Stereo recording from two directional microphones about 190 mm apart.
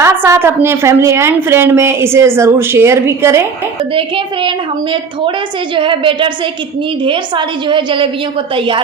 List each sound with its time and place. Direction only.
0.0 s a woman's voice: 15° right (ahead or behind)
3.9 s a woman's voice: 25° right (ahead or behind)